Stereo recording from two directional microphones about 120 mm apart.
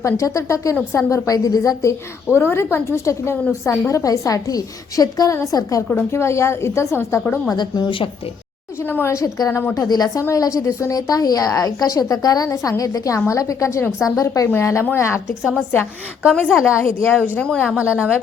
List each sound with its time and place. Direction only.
0.0 s speech: 25° left (ahead or behind)
7.5 s speech: 35° left (ahead or behind)
8.8 s speech: 20° left (ahead or behind)
16.5 s a woman's voice: 5° right (ahead or behind)
16.7 s a woman's voice: 20° left (ahead or behind)
17.7 s a woman's voice: 10° right (ahead or behind)